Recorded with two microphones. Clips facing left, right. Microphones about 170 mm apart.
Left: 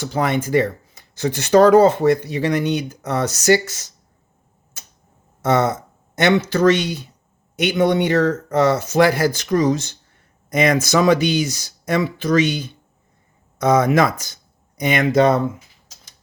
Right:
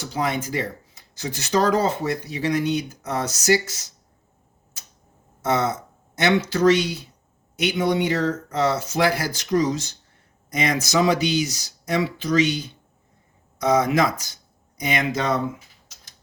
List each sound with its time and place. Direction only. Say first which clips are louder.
0.1 s speech: left 6 dB; 55° left (ahead or behind)
5.4 s speech: left 5 dB; 55° left (ahead or behind)
13.6 s speech: left 4 dB; 55° left (ahead or behind)